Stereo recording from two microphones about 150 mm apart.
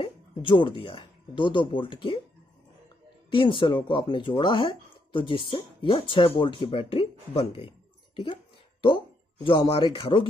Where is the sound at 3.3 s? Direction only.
35° left (ahead or behind).